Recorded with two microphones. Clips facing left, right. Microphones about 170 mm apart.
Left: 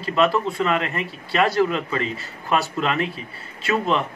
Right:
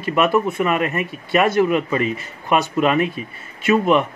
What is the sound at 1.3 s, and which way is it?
A man's voice, 20° right (ahead or behind).